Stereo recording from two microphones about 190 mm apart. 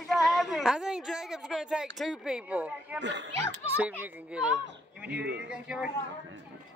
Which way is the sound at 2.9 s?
70° right (ahead or behind).